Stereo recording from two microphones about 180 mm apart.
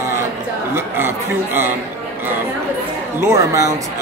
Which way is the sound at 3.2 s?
15° right (ahead or behind).